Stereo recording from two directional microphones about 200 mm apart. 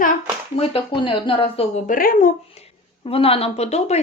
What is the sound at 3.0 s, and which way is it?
Speech, 30° left (ahead or behind).